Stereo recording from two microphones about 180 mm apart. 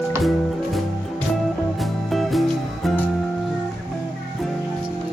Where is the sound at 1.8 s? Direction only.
Centre (ahead or behind).